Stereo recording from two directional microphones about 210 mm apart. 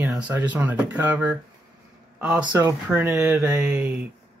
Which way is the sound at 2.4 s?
15° right (ahead or behind).